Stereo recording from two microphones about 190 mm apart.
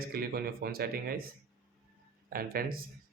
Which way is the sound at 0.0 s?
50° right (ahead or behind).